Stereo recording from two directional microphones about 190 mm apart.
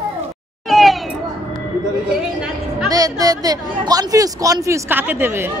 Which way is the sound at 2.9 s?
20° right (ahead or behind).